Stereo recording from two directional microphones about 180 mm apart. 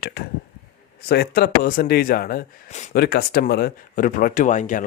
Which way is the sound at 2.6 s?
40° left (ahead or behind).